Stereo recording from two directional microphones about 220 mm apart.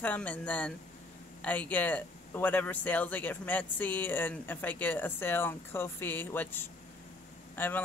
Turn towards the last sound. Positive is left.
turn(degrees=10)  # may be behind; listen again after turning